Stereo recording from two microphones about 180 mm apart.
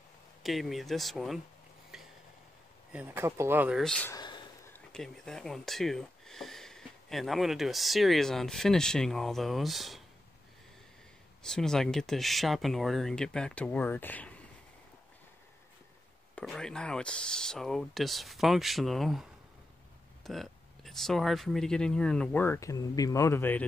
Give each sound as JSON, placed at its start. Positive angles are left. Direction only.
{"t": 0.4, "sound": "speech", "side_deg": 0}
{"t": 1.9, "sound": "a sound", "side_deg": 0}
{"t": 2.9, "sound": "speech", "side_deg": -10}
{"t": 3.8, "sound": "speech", "side_deg": 5}
{"t": 4.1, "sound": "a sound", "side_deg": 25}
{"t": 4.7, "sound": "speech", "side_deg": 5}
{"t": 11.4, "sound": "speech", "side_deg": 5}
{"t": 16.3, "sound": "speech", "side_deg": 5}
{"t": 20.2, "sound": "speech", "side_deg": 0}